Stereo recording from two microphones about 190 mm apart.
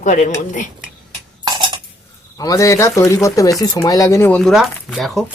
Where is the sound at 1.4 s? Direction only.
25° right (ahead or behind).